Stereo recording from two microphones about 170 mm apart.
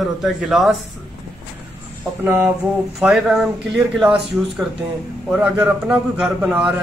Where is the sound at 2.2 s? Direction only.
15° right (ahead or behind).